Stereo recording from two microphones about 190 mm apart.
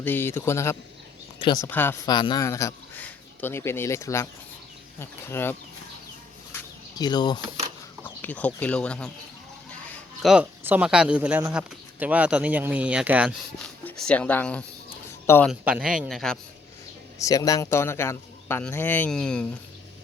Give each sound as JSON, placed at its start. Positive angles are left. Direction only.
{"t": 0.0, "sound": "a man's voice", "side_deg": 10}
{"t": 2.0, "sound": "a man's voice", "side_deg": 20}
{"t": 6.5, "sound": "a sound", "side_deg": 20}
{"t": 8.0, "sound": "speech", "side_deg": 10}
{"t": 10.2, "sound": "speech", "side_deg": -5}
{"t": 14.1, "sound": "a man's voice", "side_deg": 10}
{"t": 15.4, "sound": "speech", "side_deg": -5}
{"t": 17.2, "sound": "a man's voice", "side_deg": 15}